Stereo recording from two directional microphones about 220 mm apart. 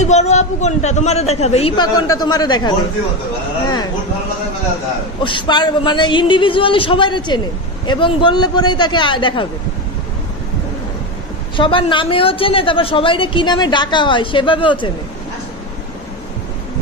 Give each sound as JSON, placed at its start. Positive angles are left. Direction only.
{"t": 0.0, "sound": "speech", "side_deg": 30}
{"t": 5.2, "sound": "speech", "side_deg": 20}
{"t": 11.5, "sound": "speech", "side_deg": 20}